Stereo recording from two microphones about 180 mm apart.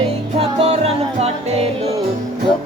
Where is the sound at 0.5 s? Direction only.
35° right (ahead or behind).